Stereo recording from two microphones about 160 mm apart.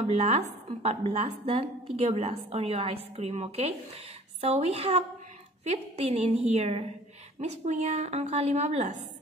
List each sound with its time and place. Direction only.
0.0 s a woman's voice: 45° right (ahead or behind)